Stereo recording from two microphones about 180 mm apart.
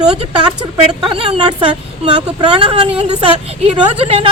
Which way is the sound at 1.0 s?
30° right (ahead or behind).